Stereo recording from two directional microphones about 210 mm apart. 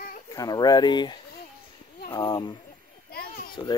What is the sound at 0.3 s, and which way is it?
A child's voice, 20° left (ahead or behind).